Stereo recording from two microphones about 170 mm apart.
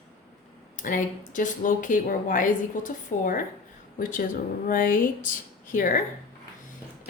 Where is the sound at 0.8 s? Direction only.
50° left (ahead or behind).